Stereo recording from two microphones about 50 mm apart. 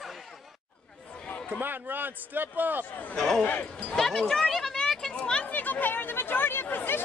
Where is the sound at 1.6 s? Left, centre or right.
Right.